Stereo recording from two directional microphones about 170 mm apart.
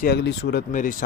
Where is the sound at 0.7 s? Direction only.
50° left (ahead or behind).